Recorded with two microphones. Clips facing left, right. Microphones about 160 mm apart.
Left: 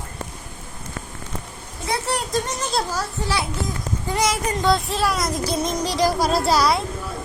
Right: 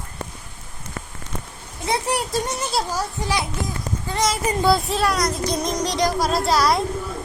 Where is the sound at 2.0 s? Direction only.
10° right (ahead or behind).